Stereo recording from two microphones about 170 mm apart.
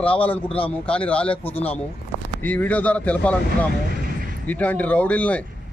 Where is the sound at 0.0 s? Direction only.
10° left (ahead or behind).